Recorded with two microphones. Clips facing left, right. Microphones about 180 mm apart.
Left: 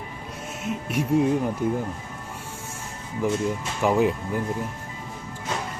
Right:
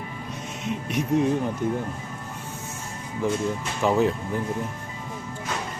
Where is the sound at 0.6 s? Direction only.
5° left (ahead or behind).